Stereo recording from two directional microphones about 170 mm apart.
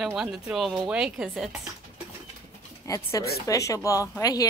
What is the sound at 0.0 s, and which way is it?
Speech, centre (ahead or behind).